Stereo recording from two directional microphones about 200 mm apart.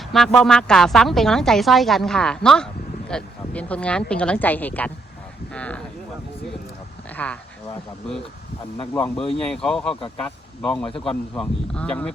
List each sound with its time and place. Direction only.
0.1 s a woman's voice: centre (ahead or behind)
7.2 s speech: 5° left (ahead or behind)
9.4 s a woman's voice: 5° left (ahead or behind)